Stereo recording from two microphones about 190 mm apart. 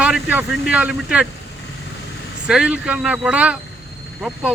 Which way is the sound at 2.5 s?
5° right (ahead or behind).